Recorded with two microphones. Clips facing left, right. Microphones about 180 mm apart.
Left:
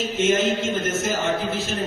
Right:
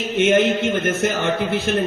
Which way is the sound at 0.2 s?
60° right (ahead or behind).